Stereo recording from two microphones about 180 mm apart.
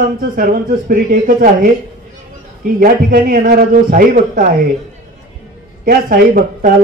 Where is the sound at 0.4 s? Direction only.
50° right (ahead or behind).